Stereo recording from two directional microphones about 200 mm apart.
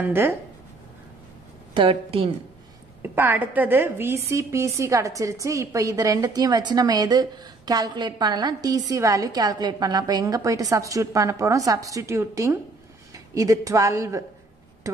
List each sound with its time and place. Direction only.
0.0 s a woman's voice: 10° right (ahead or behind)
1.7 s a woman's voice: 25° right (ahead or behind)
3.0 s a woman's voice: 10° right (ahead or behind)